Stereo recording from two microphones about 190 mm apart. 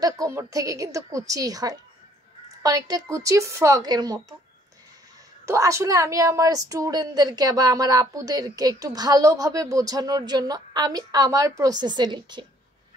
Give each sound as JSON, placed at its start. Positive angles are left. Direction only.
{"t": 0.0, "sound": "a woman's voice", "side_deg": -15}
{"t": 5.4, "sound": "a woman's voice", "side_deg": -15}